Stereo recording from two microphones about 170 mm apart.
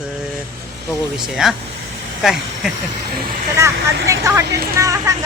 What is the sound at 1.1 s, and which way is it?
Speech, centre (ahead or behind).